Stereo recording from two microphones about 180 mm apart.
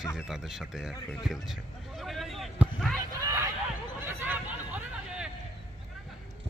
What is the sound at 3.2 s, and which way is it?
Hubbub, 15° right (ahead or behind).